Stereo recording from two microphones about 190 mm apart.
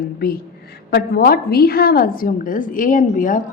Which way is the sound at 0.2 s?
50° left (ahead or behind).